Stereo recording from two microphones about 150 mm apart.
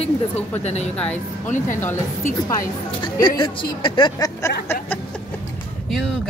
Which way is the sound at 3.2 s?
30° left (ahead or behind).